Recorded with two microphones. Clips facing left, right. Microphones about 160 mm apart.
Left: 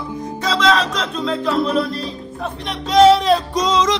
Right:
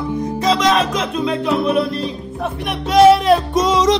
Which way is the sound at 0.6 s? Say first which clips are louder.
Right 1 dB; 10° right (ahead or behind).